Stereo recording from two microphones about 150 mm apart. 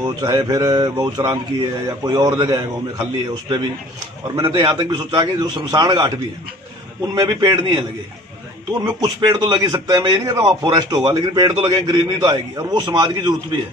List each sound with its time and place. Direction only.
0.0 s a man's voice: 30° right (ahead or behind)
7.2 s a man's voice: 25° right (ahead or behind)
8.8 s a man's voice: 30° right (ahead or behind)